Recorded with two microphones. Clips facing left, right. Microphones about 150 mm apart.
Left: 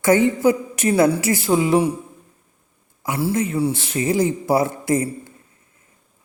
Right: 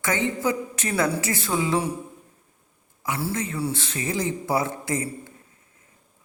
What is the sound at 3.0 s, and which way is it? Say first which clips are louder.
A man's voice: left 6 dB; 30° left (ahead or behind).